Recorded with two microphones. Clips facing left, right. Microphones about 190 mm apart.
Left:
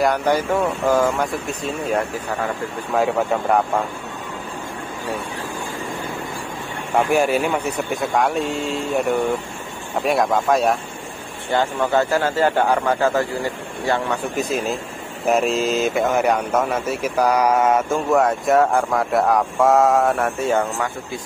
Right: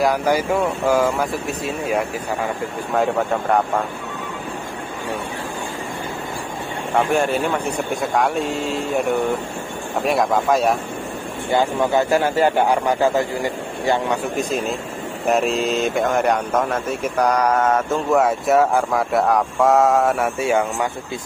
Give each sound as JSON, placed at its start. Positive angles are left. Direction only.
{"t": 0.0, "sound": "speech", "side_deg": -5}
{"t": 2.9, "sound": "speech", "side_deg": 0}
{"t": 7.1, "sound": "speech", "side_deg": 10}
{"t": 11.5, "sound": "speech", "side_deg": -15}
{"t": 14.3, "sound": "speech", "side_deg": 5}
{"t": 18.1, "sound": "speech", "side_deg": 0}